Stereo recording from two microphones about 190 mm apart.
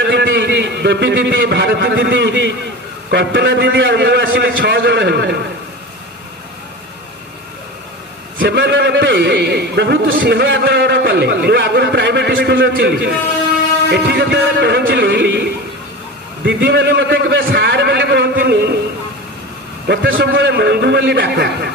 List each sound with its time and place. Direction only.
0.0 s a man's voice: 70° right (ahead or behind)
8.4 s a man's voice: 65° right (ahead or behind)
16.4 s a man's voice: 70° right (ahead or behind)
19.9 s a man's voice: 70° right (ahead or behind)